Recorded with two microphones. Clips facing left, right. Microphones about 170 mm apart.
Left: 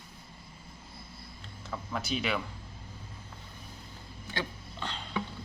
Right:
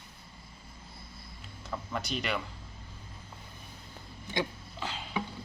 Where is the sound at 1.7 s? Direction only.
Centre (ahead or behind).